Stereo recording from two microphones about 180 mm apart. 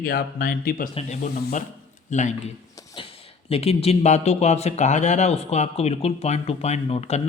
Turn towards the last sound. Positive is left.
turn(degrees=35)  # may be behind; listen again after turning